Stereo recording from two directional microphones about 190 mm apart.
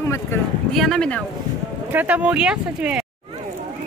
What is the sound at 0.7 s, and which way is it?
Speech, centre (ahead or behind).